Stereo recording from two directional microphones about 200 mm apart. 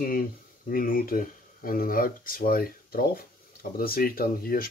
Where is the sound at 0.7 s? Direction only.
45° left (ahead or behind).